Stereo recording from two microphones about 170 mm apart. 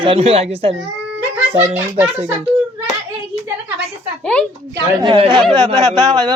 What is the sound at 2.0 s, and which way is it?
Speech, 10° right (ahead or behind).